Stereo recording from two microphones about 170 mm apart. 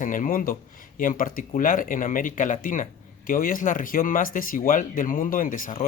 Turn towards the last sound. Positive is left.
turn(degrees=55)  # may be behind; listen again after turning